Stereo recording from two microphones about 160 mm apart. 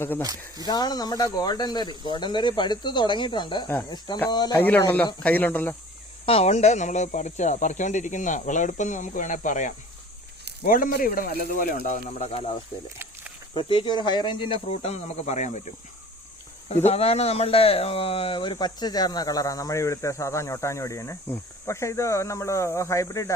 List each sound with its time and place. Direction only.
0.2 s speech: 25° right (ahead or behind)
0.6 s speech: 25° left (ahead or behind)
4.5 s speech: 10° left (ahead or behind)
6.2 s speech: 40° left (ahead or behind); by 11.9 s 60° left (ahead or behind)
12.2 s speech: 40° left (ahead or behind)
13.5 s speech: 30° left (ahead or behind); by 15.6 s 45° left (ahead or behind)
16.6 s speech: 45° left (ahead or behind); by 23.3 s 20° left (ahead or behind)